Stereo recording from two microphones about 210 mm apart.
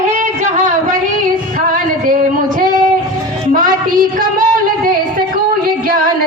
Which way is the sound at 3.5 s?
40° right (ahead or behind).